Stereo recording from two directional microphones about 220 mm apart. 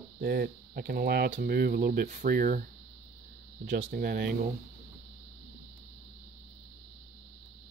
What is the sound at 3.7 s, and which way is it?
Speech, 35° right (ahead or behind).